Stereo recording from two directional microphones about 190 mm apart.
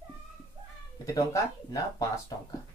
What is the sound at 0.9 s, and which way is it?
Speech, 20° left (ahead or behind).